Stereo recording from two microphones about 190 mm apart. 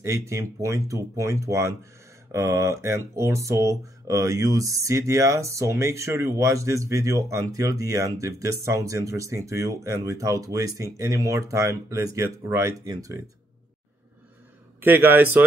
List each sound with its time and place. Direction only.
0.0 s speech: 15° right (ahead or behind)
14.8 s speech: 10° right (ahead or behind)